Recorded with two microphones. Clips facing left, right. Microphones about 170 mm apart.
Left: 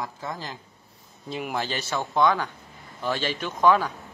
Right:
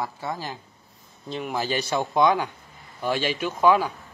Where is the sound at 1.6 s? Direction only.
15° right (ahead or behind).